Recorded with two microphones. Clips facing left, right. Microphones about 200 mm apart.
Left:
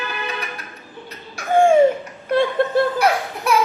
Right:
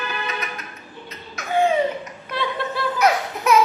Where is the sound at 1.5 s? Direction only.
50° left (ahead or behind).